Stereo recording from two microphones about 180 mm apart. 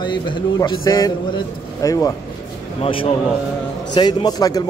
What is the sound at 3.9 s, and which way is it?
Speech, 25° left (ahead or behind).